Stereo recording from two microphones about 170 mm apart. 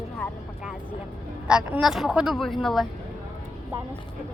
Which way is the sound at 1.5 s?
5° right (ahead or behind).